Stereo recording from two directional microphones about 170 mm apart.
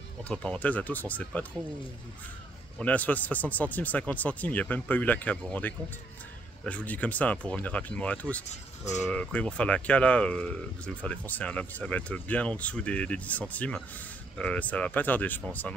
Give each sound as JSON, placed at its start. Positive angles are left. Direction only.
{"t": 0.2, "sound": "speech", "side_deg": 5}
{"t": 2.8, "sound": "speech", "side_deg": 10}
{"t": 8.5, "sound": "speech", "side_deg": 45}
{"t": 9.0, "sound": "speech", "side_deg": 5}